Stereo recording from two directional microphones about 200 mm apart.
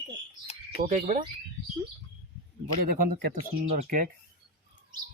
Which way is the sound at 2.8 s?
45° right (ahead or behind).